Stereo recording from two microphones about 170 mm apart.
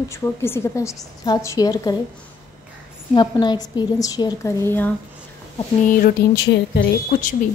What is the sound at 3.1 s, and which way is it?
A woman's voice, 25° left (ahead or behind).